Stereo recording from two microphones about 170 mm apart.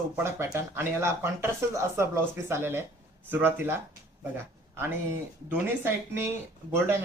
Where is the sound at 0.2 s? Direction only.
15° right (ahead or behind).